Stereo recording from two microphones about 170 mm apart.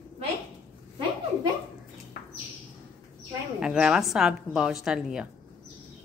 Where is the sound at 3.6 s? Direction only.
5° right (ahead or behind).